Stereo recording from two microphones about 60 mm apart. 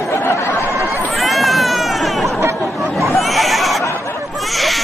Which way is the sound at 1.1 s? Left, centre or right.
Centre.